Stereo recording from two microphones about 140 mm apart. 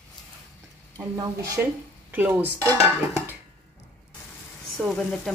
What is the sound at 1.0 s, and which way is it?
Speech, 25° right (ahead or behind).